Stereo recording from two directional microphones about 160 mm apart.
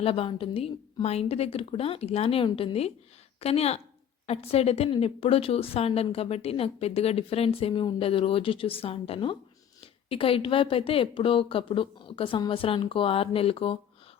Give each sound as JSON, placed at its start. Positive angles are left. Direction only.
{"t": 0.0, "sound": "a woman's voice", "side_deg": 35}